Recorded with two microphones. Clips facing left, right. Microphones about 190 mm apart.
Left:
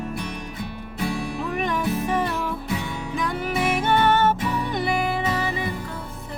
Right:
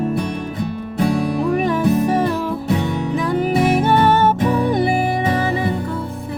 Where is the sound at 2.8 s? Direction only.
60° right (ahead or behind).